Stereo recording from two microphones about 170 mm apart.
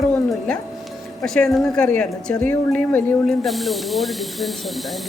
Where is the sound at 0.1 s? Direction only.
5° left (ahead or behind).